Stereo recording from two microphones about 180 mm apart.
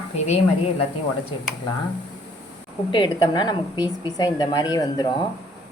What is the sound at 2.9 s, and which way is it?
A woman's voice, 25° left (ahead or behind).